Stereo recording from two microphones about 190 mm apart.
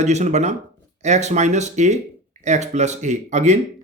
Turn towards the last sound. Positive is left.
turn(degrees=-35)  # may be behind; listen again after turning